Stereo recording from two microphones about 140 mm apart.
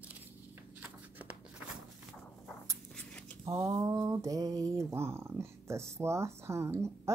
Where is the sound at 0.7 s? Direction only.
10° right (ahead or behind).